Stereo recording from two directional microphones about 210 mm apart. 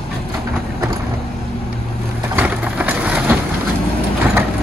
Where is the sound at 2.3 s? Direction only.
5° right (ahead or behind).